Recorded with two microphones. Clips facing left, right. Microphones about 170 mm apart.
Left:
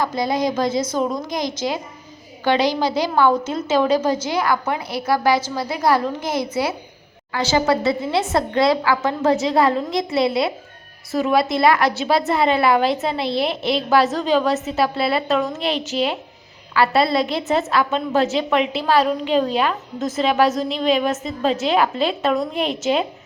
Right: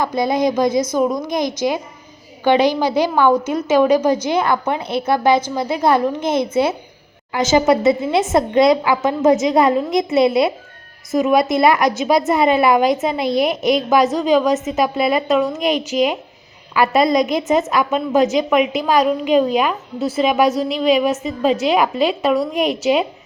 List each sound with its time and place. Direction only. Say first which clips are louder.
0.2 s a woman's voice: right 6 dB; 20° right (ahead or behind)